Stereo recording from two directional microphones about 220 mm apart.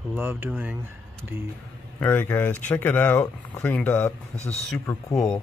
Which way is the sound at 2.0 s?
10° left (ahead or behind).